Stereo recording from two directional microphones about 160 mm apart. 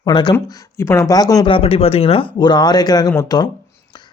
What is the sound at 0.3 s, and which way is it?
A man's voice, 15° left (ahead or behind).